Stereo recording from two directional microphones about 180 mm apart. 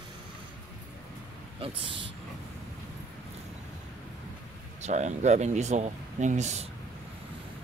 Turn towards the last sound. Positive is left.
turn(degrees=-40)  # may be behind; listen again after turning